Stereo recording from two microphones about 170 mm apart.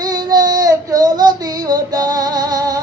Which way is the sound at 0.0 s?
25° right (ahead or behind).